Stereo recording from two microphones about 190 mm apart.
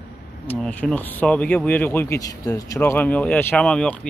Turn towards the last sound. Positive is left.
turn(degrees=5)  # may be behind; listen again after turning